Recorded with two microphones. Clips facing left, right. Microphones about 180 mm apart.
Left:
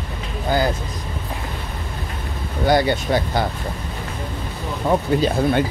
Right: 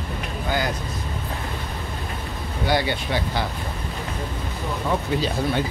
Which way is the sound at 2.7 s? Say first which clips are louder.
Left 6 dB; 45° left (ahead or behind).